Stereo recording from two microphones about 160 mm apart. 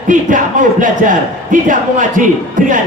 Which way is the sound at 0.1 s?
55° right (ahead or behind).